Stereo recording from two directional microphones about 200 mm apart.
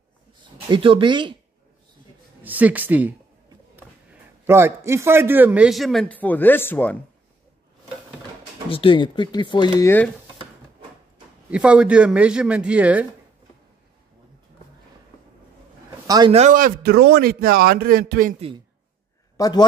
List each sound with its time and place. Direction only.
0.7 s speech: 25° right (ahead or behind)
2.4 s a man's voice: 10° right (ahead or behind); by 7.0 s 10° left (ahead or behind)
8.6 s speech: 25° left (ahead or behind)
11.5 s speech: 5° right (ahead or behind)
16.1 s speech: 20° right (ahead or behind)
16.3 s speech: 40° right (ahead or behind)
19.3 s speech: 20° left (ahead or behind)